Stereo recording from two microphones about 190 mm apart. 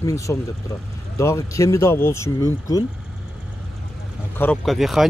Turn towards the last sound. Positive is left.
turn(degrees=0)  # may be behind; listen again after turning